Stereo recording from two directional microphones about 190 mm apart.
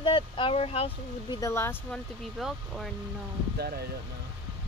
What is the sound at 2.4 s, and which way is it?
Speech, centre (ahead or behind).